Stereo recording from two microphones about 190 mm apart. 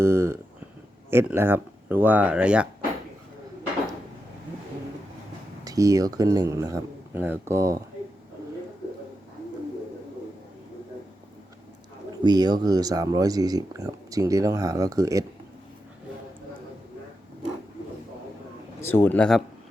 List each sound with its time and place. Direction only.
0.0 s speech: 15° right (ahead or behind)
5.6 s speech: 15° right (ahead or behind)
12.2 s speech: 20° right (ahead or behind)
18.8 s speech: 10° left (ahead or behind)